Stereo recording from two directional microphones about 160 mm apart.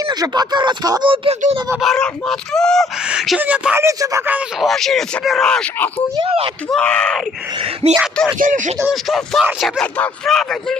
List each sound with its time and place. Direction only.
0.0 s speech: 25° right (ahead or behind)
1.8 s speech: centre (ahead or behind); by 4.4 s 15° right (ahead or behind)
4.6 s speech: centre (ahead or behind)
6.1 s speech: 35° right (ahead or behind)
6.7 s speech: 5° left (ahead or behind)
7.8 s speech: 40° right (ahead or behind)
8.4 s speech: 55° right (ahead or behind)
8.9 s speech: centre (ahead or behind)